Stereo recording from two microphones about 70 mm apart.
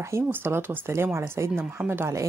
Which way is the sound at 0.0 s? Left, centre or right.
Right.